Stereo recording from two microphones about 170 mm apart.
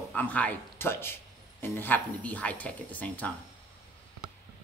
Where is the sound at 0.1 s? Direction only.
10° left (ahead or behind).